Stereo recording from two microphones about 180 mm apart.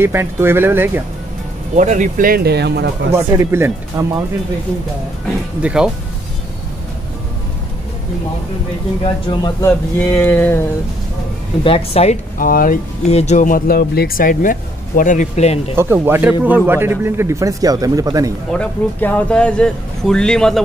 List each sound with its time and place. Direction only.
0.0 s speech: 15° right (ahead or behind)
1.8 s speech: 45° right (ahead or behind); by 2.9 s 65° right (ahead or behind)
3.2 s speech: 15° right (ahead or behind)
5.6 s speech: 5° right (ahead or behind)
9.0 s speech: 25° left (ahead or behind)
11.6 s speech: 35° left (ahead or behind)
12.4 s speech: 50° left (ahead or behind)
13.1 s speech: 40° left (ahead or behind)
15.7 s speech: 10° right (ahead or behind)
18.5 s speech: 10° left (ahead or behind)